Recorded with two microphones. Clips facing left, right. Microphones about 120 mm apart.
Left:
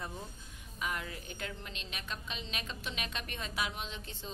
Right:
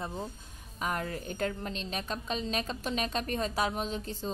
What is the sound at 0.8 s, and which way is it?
A woman's voice, 45° right (ahead or behind).